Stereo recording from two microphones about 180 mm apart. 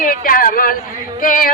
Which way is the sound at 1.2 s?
50° left (ahead or behind).